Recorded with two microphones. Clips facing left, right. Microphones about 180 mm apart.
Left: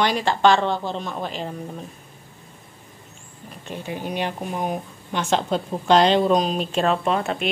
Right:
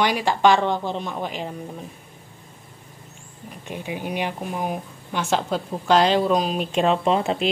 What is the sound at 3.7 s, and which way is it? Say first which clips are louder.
A woman's voice: even; 10° right (ahead or behind).